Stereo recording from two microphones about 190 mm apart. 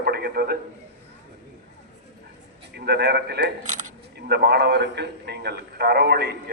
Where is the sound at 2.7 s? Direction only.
60° right (ahead or behind).